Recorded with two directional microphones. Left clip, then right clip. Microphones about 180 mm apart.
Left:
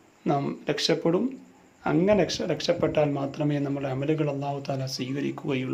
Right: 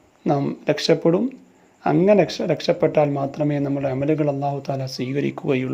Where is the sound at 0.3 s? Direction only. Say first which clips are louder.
Right 6 dB; 30° right (ahead or behind).